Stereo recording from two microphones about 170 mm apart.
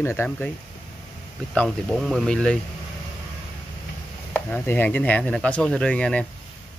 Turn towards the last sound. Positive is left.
turn(degrees=5)  # may be behind; listen again after turning